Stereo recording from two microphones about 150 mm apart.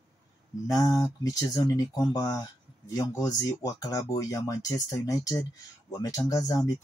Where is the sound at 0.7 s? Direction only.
25° left (ahead or behind).